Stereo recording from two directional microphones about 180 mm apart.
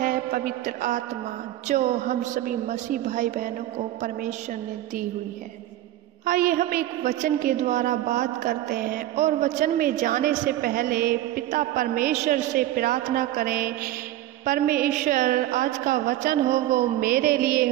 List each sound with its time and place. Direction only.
0.0 s a man's voice: 50° right (ahead or behind)
6.2 s a woman's voice: 50° right (ahead or behind)